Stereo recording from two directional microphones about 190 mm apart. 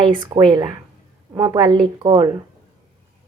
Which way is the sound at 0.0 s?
20° right (ahead or behind).